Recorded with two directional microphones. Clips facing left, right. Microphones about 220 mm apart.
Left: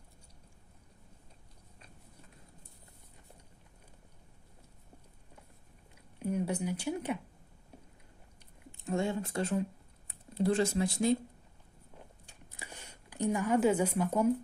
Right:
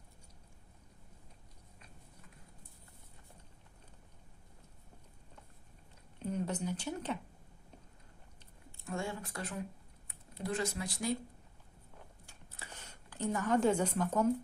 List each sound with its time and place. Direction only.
6.1 s speech: 10° left (ahead or behind)
8.7 s speech: 20° left (ahead or behind)
12.5 s a sound: 15° left (ahead or behind)